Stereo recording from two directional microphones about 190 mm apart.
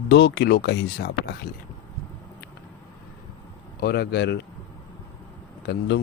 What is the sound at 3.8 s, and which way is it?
Speech, 55° left (ahead or behind).